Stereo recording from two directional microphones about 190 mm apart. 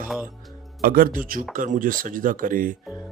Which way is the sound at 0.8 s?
50° right (ahead or behind).